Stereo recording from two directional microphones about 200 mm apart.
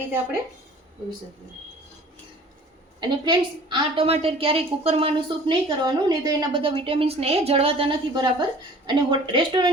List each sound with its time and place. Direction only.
3.0 s a woman's voice: 20° right (ahead or behind)